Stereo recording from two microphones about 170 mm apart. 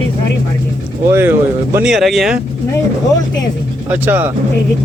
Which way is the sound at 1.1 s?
15° right (ahead or behind).